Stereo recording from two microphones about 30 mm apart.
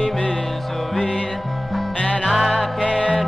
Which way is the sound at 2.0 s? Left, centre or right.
Left.